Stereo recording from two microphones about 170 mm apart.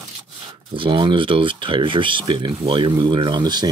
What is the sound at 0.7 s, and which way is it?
Speech, 30° right (ahead or behind).